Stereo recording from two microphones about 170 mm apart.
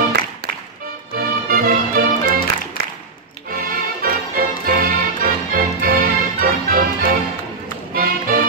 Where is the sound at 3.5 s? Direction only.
60° right (ahead or behind).